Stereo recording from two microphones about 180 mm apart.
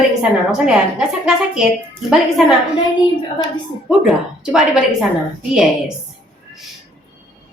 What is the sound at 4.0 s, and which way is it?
Speech, centre (ahead or behind).